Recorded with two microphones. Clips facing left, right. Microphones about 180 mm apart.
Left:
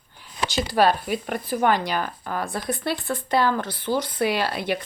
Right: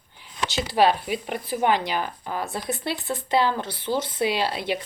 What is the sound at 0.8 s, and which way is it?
Speech, 50° left (ahead or behind).